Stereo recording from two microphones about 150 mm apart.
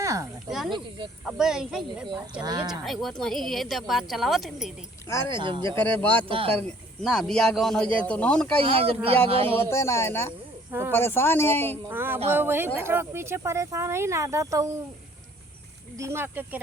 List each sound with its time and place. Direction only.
0.0 s speech: 20° right (ahead or behind)
1.2 s a woman's voice: 5° right (ahead or behind)
2.4 s speech: 25° right (ahead or behind)
2.6 s a woman's voice: centre (ahead or behind)
5.0 s speech: 20° left (ahead or behind)
5.3 s speech: 35° right (ahead or behind)
6.7 s a woman's voice: 5° left (ahead or behind)
8.6 s speech: 40° right (ahead or behind)
9.6 s speech: 15° left (ahead or behind)
10.7 s speech: 15° right (ahead or behind)
10.9 s speech: 15° left (ahead or behind)
11.9 s speech: 15° right (ahead or behind)
16.0 s speech: 15° right (ahead or behind)